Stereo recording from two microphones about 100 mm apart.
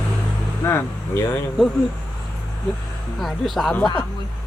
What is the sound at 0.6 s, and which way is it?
Speech, 25° left (ahead or behind).